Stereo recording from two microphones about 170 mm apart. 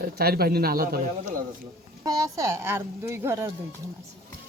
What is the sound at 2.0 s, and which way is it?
Speech, 20° right (ahead or behind).